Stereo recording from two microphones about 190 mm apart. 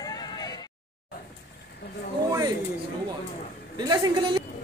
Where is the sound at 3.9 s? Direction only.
25° right (ahead or behind).